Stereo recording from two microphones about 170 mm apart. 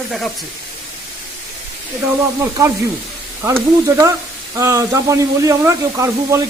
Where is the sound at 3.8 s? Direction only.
20° right (ahead or behind).